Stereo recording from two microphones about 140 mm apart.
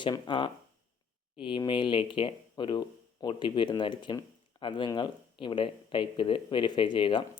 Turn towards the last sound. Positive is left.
turn(degrees=35)  # may be behind; listen again after turning